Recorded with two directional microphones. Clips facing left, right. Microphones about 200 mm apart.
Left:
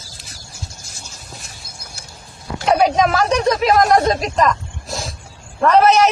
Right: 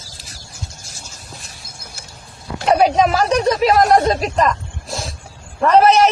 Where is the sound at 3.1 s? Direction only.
Centre (ahead or behind).